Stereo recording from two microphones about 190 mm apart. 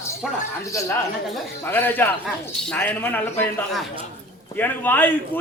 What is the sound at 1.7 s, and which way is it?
A man's voice, 10° left (ahead or behind).